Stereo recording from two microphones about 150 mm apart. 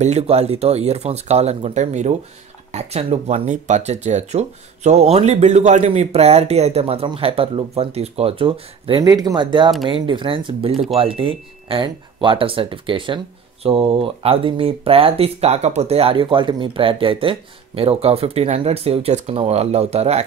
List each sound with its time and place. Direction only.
0.0 s speech: 45° right (ahead or behind)
9.0 s speech: 25° right (ahead or behind); by 20.2 s 45° right (ahead or behind)